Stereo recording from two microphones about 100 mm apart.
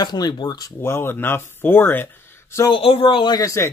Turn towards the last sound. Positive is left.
turn(degrees=35)  # may be behind; listen again after turning